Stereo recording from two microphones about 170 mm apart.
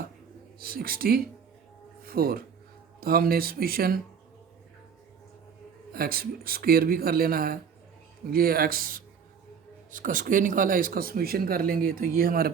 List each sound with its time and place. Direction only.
0.6 s speech: 60° right (ahead or behind)
2.0 s a sound: 60° right (ahead or behind)
3.0 s speech: 60° right (ahead or behind)
5.9 s speech: 60° right (ahead or behind)